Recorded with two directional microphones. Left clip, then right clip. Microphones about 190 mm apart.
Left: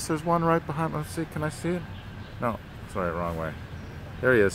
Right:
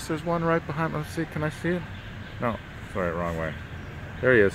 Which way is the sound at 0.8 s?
5° right (ahead or behind).